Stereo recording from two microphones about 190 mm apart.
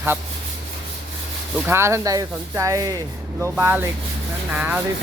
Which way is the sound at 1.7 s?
15° right (ahead or behind).